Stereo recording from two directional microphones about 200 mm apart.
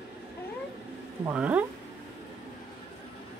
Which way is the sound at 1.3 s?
5° right (ahead or behind).